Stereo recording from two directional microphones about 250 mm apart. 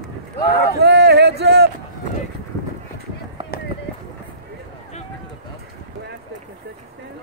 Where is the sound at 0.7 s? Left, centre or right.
Right.